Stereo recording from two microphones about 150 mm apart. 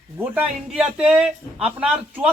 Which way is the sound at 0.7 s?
5° right (ahead or behind).